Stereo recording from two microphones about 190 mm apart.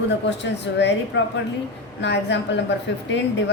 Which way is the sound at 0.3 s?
65° left (ahead or behind).